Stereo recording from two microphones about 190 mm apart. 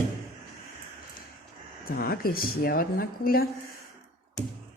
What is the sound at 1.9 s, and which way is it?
A woman's voice, 50° left (ahead or behind).